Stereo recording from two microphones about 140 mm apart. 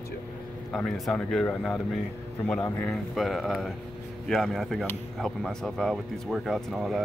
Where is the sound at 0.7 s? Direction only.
Centre (ahead or behind).